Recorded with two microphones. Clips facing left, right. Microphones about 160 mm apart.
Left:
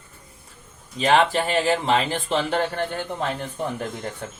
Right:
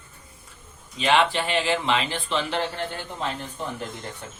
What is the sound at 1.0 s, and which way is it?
Speech, 40° left (ahead or behind).